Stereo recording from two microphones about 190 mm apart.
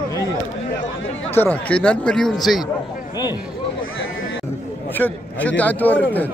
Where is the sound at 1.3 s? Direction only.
10° left (ahead or behind).